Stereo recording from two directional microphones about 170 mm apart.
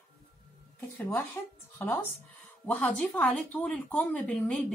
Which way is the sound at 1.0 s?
10° left (ahead or behind).